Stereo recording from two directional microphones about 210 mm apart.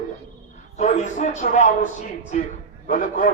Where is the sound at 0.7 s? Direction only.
35° left (ahead or behind).